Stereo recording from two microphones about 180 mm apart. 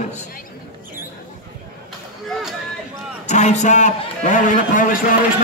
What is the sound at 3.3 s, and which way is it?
Speech, 40° left (ahead or behind).